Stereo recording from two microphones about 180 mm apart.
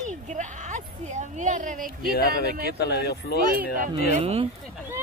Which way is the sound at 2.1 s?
60° left (ahead or behind).